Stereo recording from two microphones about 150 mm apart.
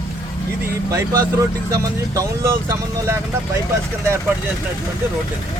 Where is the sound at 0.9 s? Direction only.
20° right (ahead or behind).